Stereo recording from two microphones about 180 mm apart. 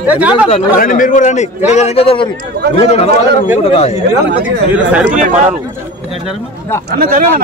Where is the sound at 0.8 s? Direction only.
50° left (ahead or behind).